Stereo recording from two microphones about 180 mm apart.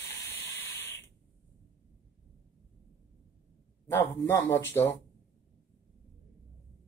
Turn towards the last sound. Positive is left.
turn(degrees=10)  # may be behind; listen again after turning